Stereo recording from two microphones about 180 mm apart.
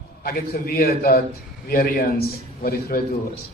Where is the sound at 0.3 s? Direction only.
55° left (ahead or behind).